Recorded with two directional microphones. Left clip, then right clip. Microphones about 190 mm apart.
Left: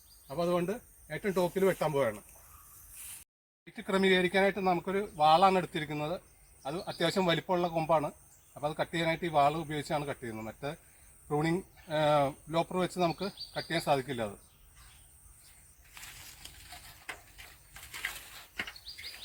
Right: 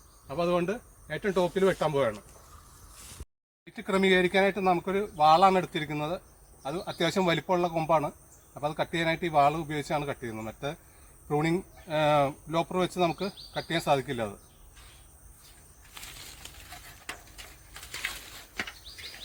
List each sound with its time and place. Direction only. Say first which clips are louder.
0.3 s speech: right 4 dB; 15° left (ahead or behind)
3.7 s speech: right 3 dB; 10° left (ahead or behind)